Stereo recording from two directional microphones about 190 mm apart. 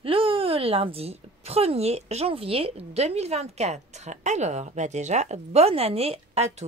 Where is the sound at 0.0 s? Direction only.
30° right (ahead or behind).